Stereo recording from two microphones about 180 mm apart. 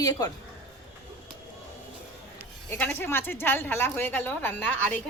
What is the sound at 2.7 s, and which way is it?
A woman's voice, 10° left (ahead or behind).